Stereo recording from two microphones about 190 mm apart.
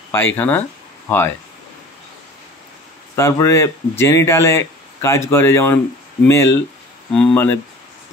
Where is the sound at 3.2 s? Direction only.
15° left (ahead or behind).